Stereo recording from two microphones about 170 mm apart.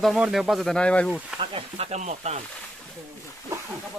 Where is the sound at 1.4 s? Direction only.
35° right (ahead or behind).